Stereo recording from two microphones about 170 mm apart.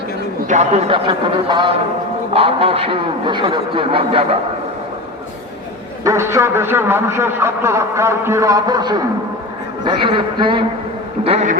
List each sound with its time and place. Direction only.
0.4 s a man's voice: 40° right (ahead or behind)
6.1 s a man's voice: 15° right (ahead or behind); by 11.4 s 35° right (ahead or behind)